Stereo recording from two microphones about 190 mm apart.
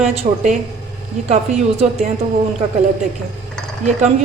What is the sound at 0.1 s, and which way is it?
A woman's voice, 35° right (ahead or behind).